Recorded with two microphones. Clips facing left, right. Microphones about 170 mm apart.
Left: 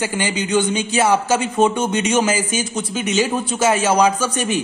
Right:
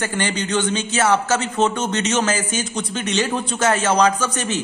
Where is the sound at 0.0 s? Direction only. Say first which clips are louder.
Left 1 dB; 10° left (ahead or behind).